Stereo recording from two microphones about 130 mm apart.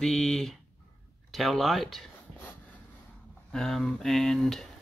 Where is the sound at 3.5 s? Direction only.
5° left (ahead or behind).